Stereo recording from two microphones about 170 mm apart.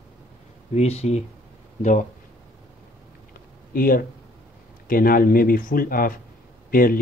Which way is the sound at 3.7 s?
60° left (ahead or behind).